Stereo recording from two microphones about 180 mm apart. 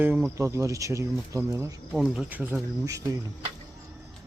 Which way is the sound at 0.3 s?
15° right (ahead or behind).